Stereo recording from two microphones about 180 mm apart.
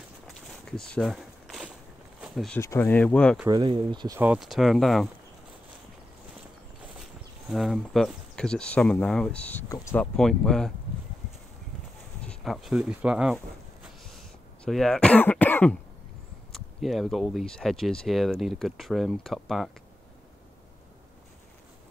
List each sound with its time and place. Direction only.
0.3 s walk: centre (ahead or behind)
2.2 s speech: centre (ahead or behind)
2.6 s speech: 15° left (ahead or behind)
3.4 s speech: 25° right (ahead or behind)
4.2 s speech: 5° right (ahead or behind)
7.0 s speech: centre (ahead or behind); by 10.0 s 15° left (ahead or behind)
10.1 s speech: 5° left (ahead or behind)
12.3 s speech: centre (ahead or behind)
14.6 s speech: 5° left (ahead or behind)